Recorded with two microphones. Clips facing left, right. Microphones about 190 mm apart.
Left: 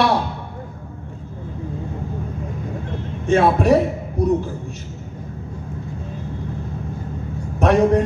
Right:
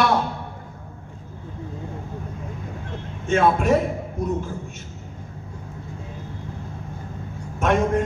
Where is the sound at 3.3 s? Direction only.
35° left (ahead or behind).